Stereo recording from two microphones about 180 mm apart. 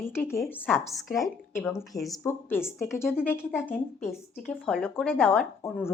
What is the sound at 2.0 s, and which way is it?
Speech, 15° left (ahead or behind).